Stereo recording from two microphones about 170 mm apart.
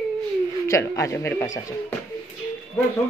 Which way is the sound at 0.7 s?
20° left (ahead or behind).